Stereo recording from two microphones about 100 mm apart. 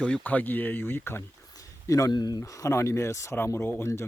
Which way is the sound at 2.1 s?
40° left (ahead or behind).